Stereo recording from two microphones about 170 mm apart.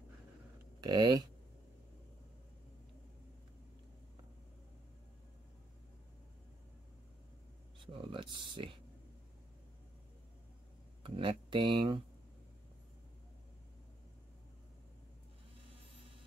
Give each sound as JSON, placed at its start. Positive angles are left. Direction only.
{"t": 0.7, "sound": "speech", "side_deg": -25}
{"t": 7.8, "sound": "speech", "side_deg": -30}
{"t": 11.0, "sound": "speech", "side_deg": -30}